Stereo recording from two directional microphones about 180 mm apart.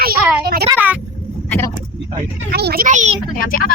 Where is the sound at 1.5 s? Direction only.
15° left (ahead or behind).